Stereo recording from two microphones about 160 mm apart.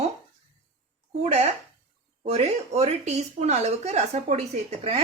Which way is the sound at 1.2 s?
40° right (ahead or behind).